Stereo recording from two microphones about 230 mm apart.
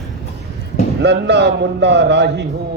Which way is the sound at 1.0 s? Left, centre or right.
Right.